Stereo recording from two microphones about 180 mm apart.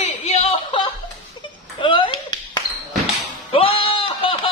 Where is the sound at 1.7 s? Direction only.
30° left (ahead or behind).